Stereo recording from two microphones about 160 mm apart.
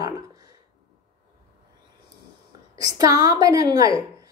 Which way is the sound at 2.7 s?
25° right (ahead or behind).